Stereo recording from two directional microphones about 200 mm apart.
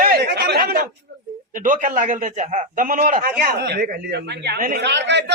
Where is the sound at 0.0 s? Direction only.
50° right (ahead or behind).